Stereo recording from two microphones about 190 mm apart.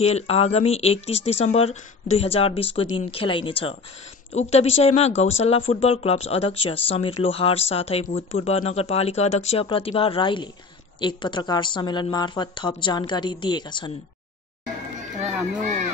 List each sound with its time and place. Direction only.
0.0 s a woman's voice: 35° left (ahead or behind)